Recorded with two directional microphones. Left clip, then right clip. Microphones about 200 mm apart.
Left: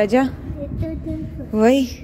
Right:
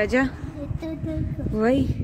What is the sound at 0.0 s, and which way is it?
Speech, 20° left (ahead or behind).